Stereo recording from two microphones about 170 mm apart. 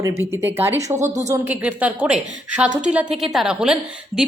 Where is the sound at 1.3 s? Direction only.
10° right (ahead or behind).